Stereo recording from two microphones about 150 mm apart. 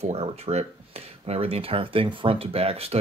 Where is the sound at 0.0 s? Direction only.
45° right (ahead or behind).